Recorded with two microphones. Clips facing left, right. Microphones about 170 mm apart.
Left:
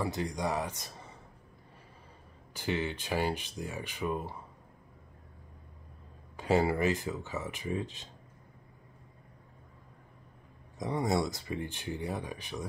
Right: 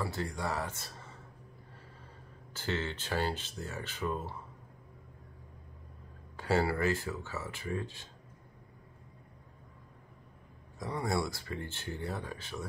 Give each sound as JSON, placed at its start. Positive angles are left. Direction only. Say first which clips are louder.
{"t": 0.0, "sound": "speech", "louder": "left 3 dB", "side_deg": 15}
{"t": 2.5, "sound": "speech", "louder": "left 3 dB", "side_deg": 15}
{"t": 6.3, "sound": "speech", "louder": "left 3 dB", "side_deg": 20}
{"t": 10.8, "sound": "speech", "louder": "left 3 dB", "side_deg": 20}